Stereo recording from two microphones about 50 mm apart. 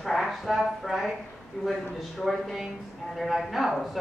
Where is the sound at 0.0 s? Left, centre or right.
Centre.